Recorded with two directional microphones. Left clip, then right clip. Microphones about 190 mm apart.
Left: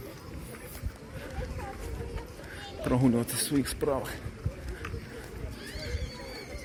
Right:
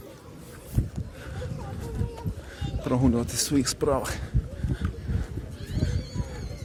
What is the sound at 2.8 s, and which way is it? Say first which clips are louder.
Speech: right 2 dB; 20° right (ahead or behind).